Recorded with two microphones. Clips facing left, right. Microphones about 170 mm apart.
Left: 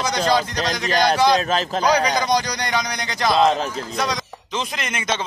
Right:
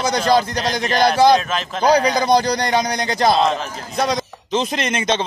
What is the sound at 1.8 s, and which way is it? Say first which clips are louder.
A man's voice: right 5 dB; 30° right (ahead or behind).